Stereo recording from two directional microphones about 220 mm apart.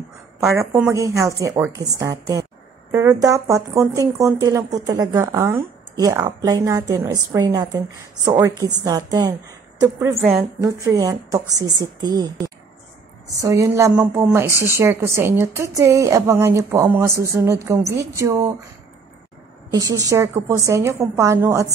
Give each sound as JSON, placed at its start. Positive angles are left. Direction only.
{"t": 0.6, "sound": "speech", "side_deg": -10}
{"t": 10.6, "sound": "speech", "side_deg": -15}
{"t": 19.7, "sound": "speech", "side_deg": -15}